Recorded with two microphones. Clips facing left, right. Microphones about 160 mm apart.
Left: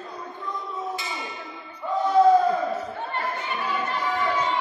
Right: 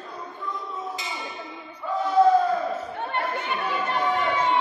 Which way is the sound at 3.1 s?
65° right (ahead or behind).